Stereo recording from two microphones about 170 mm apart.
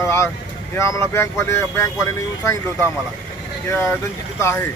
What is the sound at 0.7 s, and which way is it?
Speech, 15° left (ahead or behind).